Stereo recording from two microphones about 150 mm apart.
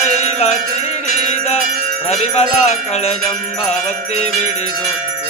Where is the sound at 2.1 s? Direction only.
45° left (ahead or behind).